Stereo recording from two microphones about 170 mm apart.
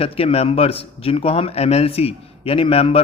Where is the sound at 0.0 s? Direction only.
35° left (ahead or behind).